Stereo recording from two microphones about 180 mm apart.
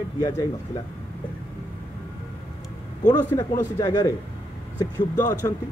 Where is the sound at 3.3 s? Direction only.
20° left (ahead or behind).